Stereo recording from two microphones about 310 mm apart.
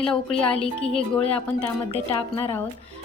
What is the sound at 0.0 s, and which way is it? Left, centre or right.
Speech, centre.